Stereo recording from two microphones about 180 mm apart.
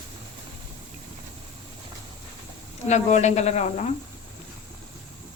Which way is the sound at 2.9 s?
40° left (ahead or behind).